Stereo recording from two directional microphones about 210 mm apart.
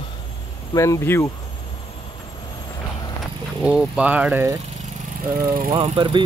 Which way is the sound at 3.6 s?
5° right (ahead or behind).